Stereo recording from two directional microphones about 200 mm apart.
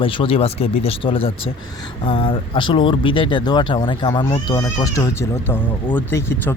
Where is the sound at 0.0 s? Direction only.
25° left (ahead or behind).